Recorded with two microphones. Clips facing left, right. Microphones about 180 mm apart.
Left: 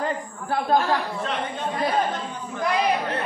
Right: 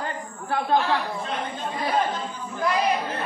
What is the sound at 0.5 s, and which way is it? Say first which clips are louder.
Speech: left 1 dB; 40° left (ahead or behind).